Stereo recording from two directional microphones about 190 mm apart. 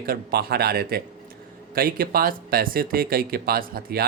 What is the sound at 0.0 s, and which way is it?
Speech, 55° right (ahead or behind).